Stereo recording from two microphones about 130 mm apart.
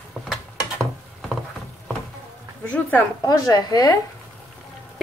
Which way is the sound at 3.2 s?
30° left (ahead or behind).